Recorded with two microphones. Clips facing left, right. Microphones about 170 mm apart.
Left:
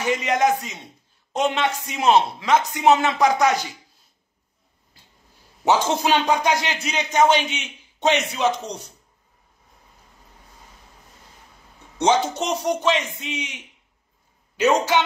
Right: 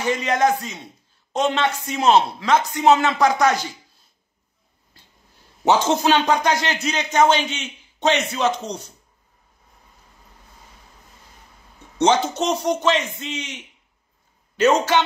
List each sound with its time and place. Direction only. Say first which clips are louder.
0.0 s speech: right 1 dB; 15° left (ahead or behind)
5.7 s speech: right 2 dB; 5° left (ahead or behind)
12.0 s speech: right 1 dB; 5° left (ahead or behind)
14.6 s speech: right 2 dB; 10° left (ahead or behind)